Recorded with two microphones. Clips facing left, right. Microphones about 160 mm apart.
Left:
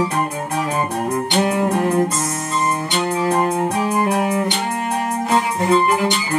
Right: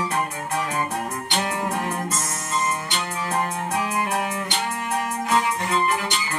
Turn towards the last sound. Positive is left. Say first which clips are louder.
# left 7 dB
turn(degrees=30)  # may be behind; listen again after turning